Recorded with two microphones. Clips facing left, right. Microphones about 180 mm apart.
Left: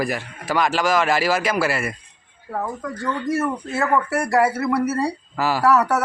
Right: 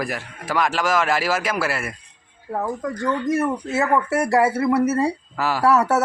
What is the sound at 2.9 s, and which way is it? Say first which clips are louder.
Speech: right 1 dB; 20° right (ahead or behind).